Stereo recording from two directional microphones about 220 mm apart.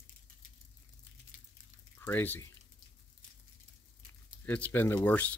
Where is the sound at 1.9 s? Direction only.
10° left (ahead or behind).